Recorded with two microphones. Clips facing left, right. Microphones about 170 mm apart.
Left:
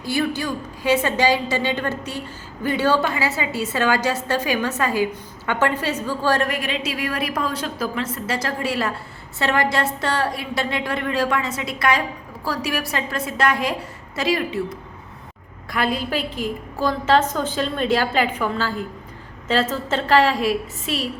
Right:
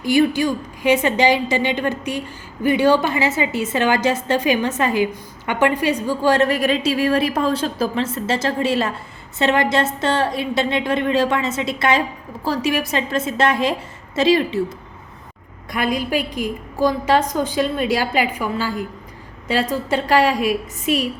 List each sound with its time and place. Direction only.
0.0 s a woman's voice: 15° right (ahead or behind)
6.5 s a woman's voice: 40° right (ahead or behind)
15.7 s a woman's voice: 15° right (ahead or behind)